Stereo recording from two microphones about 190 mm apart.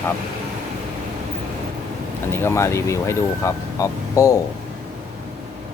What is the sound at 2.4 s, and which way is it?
Speech, 15° left (ahead or behind).